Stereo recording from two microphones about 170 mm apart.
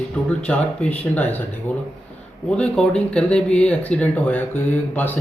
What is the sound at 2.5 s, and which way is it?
Speech, 5° left (ahead or behind).